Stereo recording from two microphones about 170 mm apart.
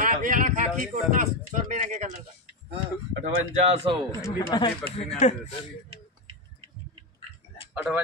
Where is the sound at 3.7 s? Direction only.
30° right (ahead or behind).